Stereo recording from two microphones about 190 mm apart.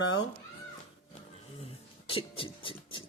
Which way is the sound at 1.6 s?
30° left (ahead or behind).